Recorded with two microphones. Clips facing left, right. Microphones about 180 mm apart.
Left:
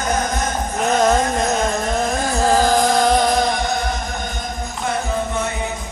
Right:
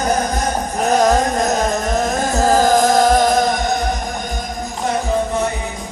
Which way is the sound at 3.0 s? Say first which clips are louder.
Right 3 dB; centre (ahead or behind).